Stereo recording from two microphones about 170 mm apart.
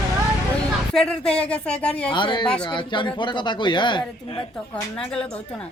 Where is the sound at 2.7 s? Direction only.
30° left (ahead or behind).